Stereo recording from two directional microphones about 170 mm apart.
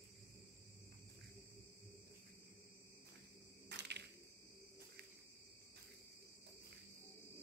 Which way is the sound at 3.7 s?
85° right.